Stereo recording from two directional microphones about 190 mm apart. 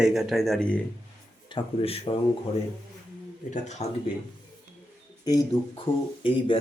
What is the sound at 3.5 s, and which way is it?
Speech, 35° left (ahead or behind).